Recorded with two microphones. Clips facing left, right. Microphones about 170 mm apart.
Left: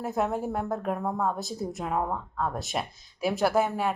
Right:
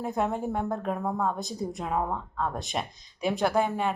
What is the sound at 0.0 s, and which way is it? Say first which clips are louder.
A woman's voice: even; centre (ahead or behind).